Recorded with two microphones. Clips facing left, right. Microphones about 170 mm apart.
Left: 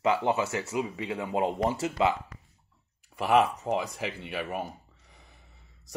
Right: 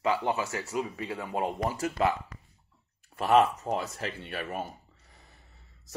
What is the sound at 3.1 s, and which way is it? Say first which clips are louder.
Speech: right 1 dB; 10° left (ahead or behind).